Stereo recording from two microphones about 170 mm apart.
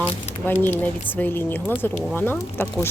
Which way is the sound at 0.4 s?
10° left (ahead or behind).